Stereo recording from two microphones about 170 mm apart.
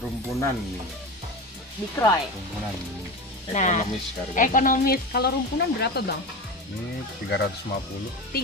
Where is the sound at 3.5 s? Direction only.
45° left (ahead or behind); by 6.1 s 75° left (ahead or behind).